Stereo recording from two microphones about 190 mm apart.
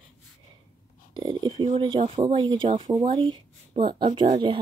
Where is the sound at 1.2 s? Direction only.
20° right (ahead or behind).